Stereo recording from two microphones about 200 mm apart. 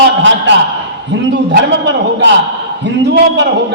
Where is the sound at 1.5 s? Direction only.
60° right (ahead or behind).